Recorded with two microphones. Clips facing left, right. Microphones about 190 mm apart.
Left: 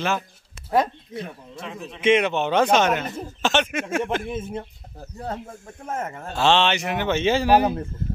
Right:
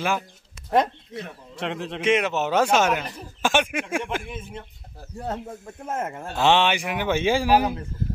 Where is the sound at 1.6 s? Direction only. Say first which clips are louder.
Right 7 dB; 80° right.